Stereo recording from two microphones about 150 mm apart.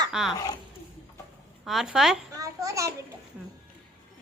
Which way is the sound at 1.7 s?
Centre (ahead or behind).